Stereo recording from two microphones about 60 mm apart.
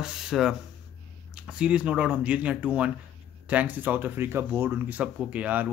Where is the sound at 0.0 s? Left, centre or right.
Centre; by 4.7 s right.